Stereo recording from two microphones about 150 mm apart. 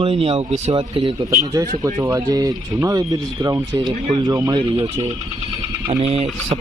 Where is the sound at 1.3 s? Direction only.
20° right (ahead or behind).